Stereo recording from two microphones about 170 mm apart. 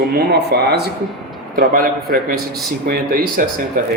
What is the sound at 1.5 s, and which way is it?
Speech, 55° right (ahead or behind).